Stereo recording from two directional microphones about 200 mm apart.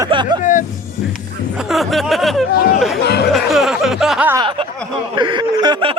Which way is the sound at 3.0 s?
55° left (ahead or behind).